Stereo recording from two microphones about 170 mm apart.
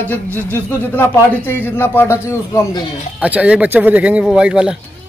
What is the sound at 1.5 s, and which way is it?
A man's voice, 15° left (ahead or behind).